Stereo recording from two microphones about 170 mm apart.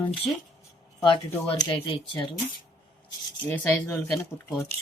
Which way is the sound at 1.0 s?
25° left (ahead or behind).